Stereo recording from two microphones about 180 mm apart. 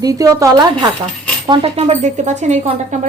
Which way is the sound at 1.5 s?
35° right (ahead or behind).